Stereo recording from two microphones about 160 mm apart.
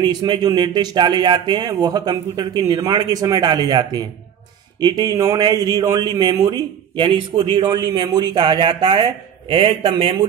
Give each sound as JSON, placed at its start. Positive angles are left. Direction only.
{"t": 0.0, "sound": "a man's voice", "side_deg": -25}